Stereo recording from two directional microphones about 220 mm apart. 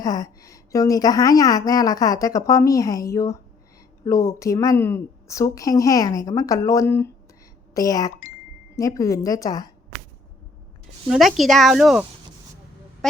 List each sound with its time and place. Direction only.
0.0 s a woman's voice: 15° left (ahead or behind)
11.1 s speech: centre (ahead or behind)